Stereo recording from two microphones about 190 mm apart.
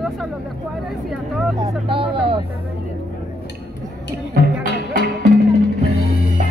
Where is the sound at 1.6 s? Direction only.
25° right (ahead or behind).